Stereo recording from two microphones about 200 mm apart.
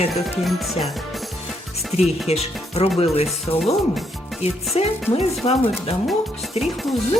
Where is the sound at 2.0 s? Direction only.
30° left (ahead or behind).